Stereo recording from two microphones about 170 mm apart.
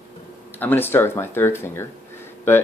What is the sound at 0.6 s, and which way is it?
Speech, 10° left (ahead or behind).